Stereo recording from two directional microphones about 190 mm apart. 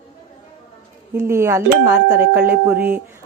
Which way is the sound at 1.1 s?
15° right (ahead or behind).